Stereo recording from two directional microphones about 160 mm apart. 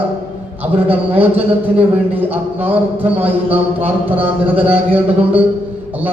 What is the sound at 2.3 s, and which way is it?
Speech, 10° right (ahead or behind).